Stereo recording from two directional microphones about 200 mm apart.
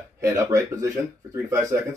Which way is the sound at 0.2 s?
15° right (ahead or behind).